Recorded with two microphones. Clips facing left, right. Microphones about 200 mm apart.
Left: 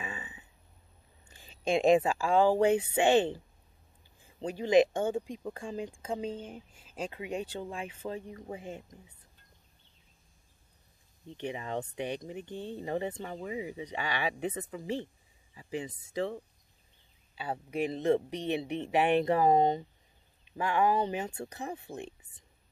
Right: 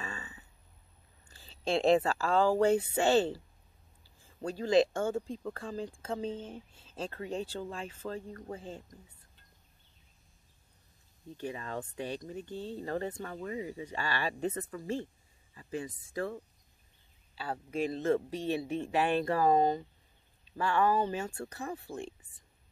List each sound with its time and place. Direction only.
0.0 s burping: 15° left (ahead or behind)
1.3 s speech: 15° left (ahead or behind)
11.2 s speech: 20° left (ahead or behind)
17.4 s speech: 20° left (ahead or behind)